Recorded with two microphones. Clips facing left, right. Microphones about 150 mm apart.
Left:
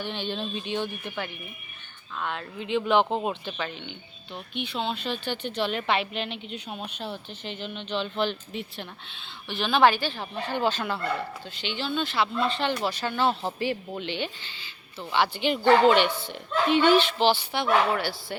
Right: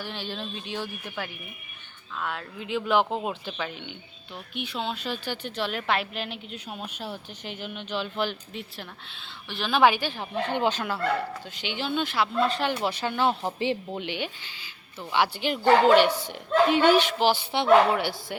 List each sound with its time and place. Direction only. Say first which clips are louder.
0.0 s a woman's voice: left 3 dB; centre (ahead or behind)
17.5 s speech: right 2 dB; 20° right (ahead or behind)